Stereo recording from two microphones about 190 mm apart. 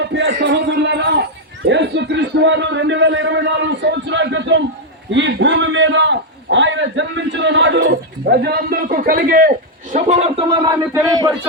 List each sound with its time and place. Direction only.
0.0 s a man's voice: 65° right (ahead or behind)
5.1 s a sound: 70° right (ahead or behind)
7.8 s speech: 55° right (ahead or behind)
9.9 s a man's voice: 35° right (ahead or behind)
10.7 s a man's voice: 20° right (ahead or behind)